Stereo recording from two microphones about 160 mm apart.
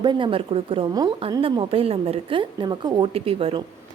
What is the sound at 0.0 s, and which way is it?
A woman's voice, 30° right (ahead or behind).